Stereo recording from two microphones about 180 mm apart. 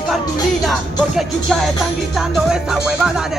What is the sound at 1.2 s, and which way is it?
Music, centre (ahead or behind).